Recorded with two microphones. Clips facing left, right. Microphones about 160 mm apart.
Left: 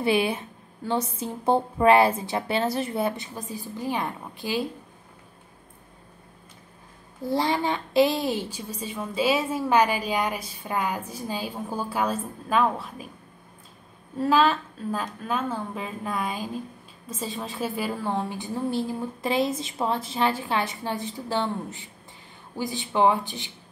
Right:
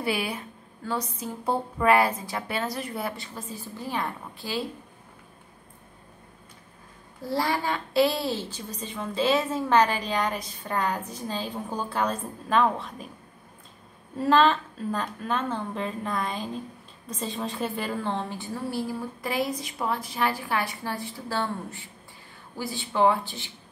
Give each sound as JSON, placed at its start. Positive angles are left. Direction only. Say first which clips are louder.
{"t": 0.0, "sound": "a woman's voice", "louder": "left 6 dB", "side_deg": 25}
{"t": 7.2, "sound": "a woman's voice", "louder": "left 2 dB", "side_deg": 20}
{"t": 14.1, "sound": "a woman's voice", "louder": "even", "side_deg": 5}